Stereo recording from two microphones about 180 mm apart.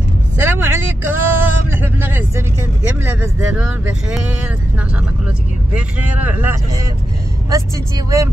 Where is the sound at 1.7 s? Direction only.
10° right (ahead or behind).